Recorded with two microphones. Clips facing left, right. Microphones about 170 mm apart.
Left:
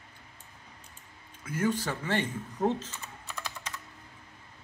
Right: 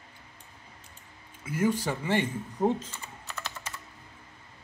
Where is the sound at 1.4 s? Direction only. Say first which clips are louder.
Right 2 dB; 10° right (ahead or behind).